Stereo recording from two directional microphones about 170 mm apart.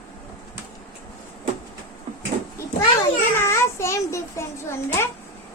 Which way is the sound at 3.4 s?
15° left (ahead or behind).